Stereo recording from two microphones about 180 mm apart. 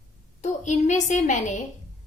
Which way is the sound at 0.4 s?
40° left (ahead or behind).